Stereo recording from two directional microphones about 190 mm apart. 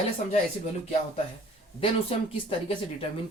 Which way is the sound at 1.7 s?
30° left (ahead or behind).